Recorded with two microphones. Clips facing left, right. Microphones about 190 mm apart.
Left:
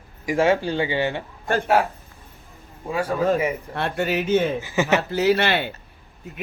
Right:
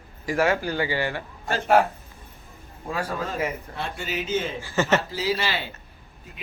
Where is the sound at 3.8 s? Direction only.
60° left (ahead or behind).